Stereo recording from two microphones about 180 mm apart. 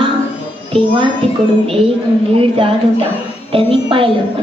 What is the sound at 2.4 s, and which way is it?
A woman's voice, 30° right (ahead or behind).